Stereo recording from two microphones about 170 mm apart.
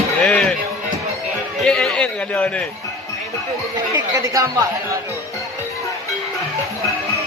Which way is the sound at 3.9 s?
20° right (ahead or behind).